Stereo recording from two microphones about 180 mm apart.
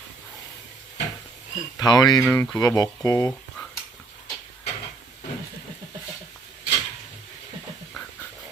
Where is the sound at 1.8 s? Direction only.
20° left (ahead or behind).